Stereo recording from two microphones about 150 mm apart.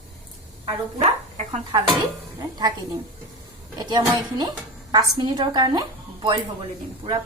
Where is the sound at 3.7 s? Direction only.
30° right (ahead or behind).